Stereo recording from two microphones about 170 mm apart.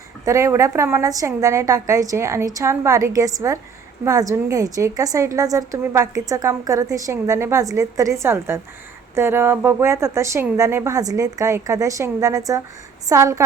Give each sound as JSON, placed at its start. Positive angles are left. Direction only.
{"t": 0.3, "sound": "a woman's voice", "side_deg": -15}